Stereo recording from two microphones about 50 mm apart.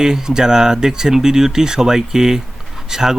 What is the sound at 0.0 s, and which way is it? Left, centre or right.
Speech, centre.